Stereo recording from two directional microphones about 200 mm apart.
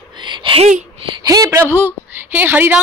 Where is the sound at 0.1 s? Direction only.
25° right (ahead or behind).